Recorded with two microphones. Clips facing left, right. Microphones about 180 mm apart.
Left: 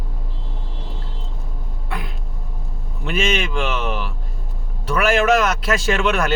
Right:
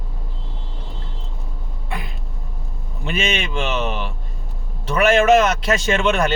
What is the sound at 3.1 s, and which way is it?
Speech, centre (ahead or behind).